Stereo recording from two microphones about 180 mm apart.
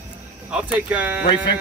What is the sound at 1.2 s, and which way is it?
Speech, 65° left (ahead or behind).